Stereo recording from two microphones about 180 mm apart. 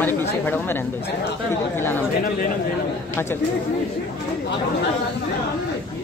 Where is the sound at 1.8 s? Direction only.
10° left (ahead or behind).